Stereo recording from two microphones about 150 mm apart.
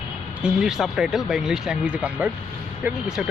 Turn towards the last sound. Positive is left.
turn(degrees=-5)  # may be behind; listen again after turning